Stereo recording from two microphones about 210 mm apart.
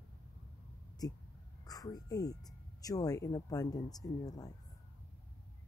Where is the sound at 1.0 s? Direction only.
15° left (ahead or behind).